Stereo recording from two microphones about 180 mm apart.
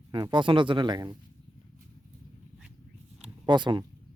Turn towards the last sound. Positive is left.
turn(degrees=-25)  # may be behind; listen again after turning